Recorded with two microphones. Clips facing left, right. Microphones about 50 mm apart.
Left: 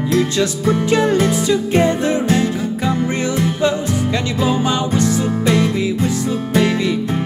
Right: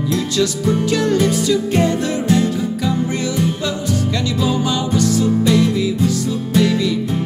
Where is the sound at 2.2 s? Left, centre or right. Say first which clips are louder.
Even; left.